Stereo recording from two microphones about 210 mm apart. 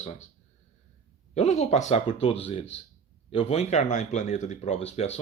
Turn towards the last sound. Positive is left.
turn(degrees=30)  # may be behind; listen again after turning